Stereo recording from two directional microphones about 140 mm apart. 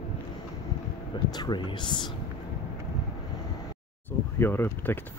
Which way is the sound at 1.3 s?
30° left (ahead or behind).